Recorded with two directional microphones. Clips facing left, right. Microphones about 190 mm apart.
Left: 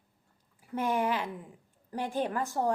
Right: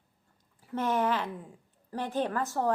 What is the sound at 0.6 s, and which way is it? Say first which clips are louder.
A woman's voice: right 1 dB; 10° left (ahead or behind).